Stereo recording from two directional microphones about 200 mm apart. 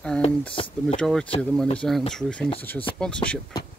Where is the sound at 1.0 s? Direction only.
5° left (ahead or behind).